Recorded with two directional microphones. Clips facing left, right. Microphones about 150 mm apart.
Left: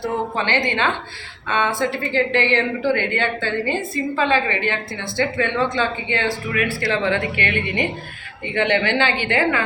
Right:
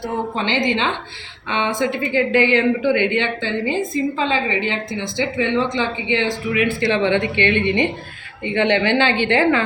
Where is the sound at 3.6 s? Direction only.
15° right (ahead or behind).